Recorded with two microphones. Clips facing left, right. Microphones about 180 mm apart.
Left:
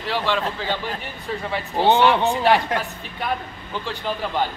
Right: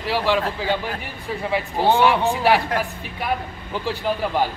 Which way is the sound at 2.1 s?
5° right (ahead or behind).